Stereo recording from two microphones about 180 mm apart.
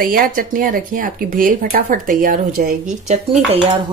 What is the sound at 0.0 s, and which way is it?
Speech, 55° right (ahead or behind).